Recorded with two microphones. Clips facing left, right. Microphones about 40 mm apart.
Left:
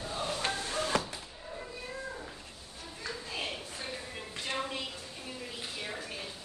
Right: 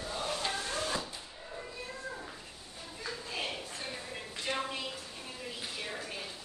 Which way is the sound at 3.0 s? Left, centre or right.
Centre.